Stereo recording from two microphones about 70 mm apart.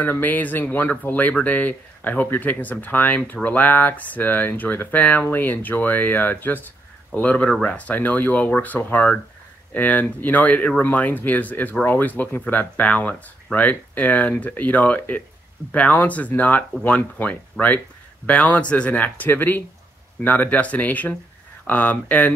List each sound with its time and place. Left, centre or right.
0.0 s speech: left